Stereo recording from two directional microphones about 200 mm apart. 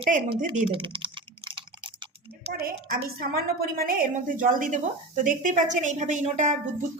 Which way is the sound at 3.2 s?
50° right (ahead or behind).